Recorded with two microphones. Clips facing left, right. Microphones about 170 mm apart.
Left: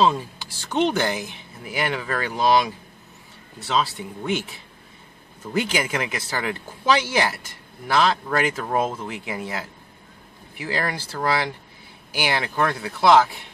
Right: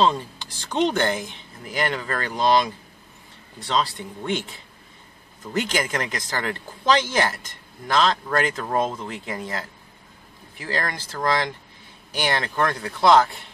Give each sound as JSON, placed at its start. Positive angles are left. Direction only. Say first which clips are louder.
{"t": 0.0, "sound": "speech", "louder": "left 1 dB", "side_deg": 5}